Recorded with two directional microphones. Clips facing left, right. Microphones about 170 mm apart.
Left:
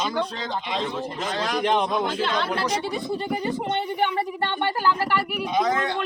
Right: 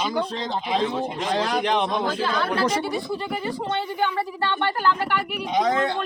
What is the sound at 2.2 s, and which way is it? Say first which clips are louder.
Speech: right 2 dB; 25° left (ahead or behind).